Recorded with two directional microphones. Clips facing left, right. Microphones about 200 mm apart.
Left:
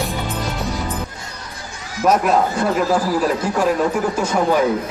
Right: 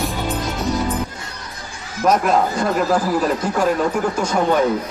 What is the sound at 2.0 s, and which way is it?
Speech, 5° left (ahead or behind).